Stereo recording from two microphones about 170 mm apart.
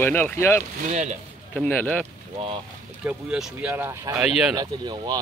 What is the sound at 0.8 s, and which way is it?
Speech, 45° right (ahead or behind).